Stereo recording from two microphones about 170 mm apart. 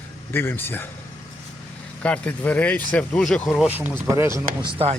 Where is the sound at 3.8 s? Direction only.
15° right (ahead or behind).